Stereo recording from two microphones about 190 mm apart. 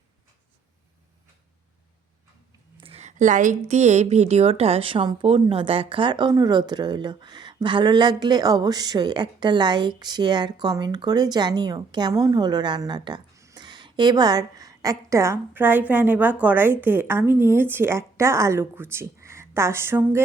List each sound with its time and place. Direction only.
2.8 s a woman's voice: 35° right (ahead or behind); by 20.2 s 10° right (ahead or behind)